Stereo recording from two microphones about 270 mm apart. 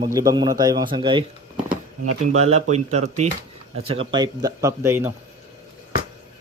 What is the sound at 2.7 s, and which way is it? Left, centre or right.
Speech, right.